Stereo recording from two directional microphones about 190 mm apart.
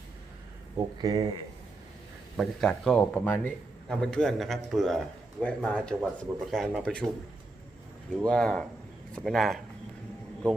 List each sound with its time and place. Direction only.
0.9 s speech: 20° right (ahead or behind)
2.3 s a man's voice: centre (ahead or behind)
8.3 s a man's voice: 5° left (ahead or behind)